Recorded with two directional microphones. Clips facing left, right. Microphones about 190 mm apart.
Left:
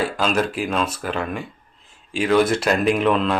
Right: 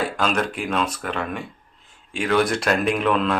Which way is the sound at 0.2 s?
5° left (ahead or behind).